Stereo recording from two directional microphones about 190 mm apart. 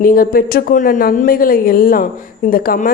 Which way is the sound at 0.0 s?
50° left (ahead or behind).